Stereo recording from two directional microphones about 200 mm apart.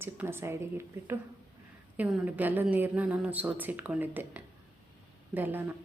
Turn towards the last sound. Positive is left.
turn(degrees=-10)  # may be behind; listen again after turning